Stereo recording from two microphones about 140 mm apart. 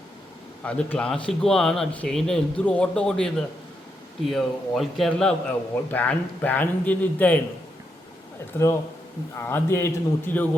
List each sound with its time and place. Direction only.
0.6 s a man's voice: 10° left (ahead or behind)
8.5 s a man's voice: 15° left (ahead or behind)